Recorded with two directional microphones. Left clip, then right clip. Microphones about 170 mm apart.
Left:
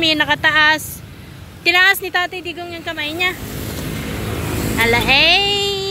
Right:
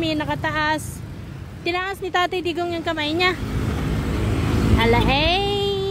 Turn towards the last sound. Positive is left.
turn(degrees=-5)  # may be behind; listen again after turning